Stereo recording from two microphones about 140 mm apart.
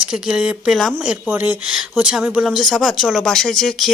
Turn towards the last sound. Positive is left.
turn(degrees=5)  # may be behind; listen again after turning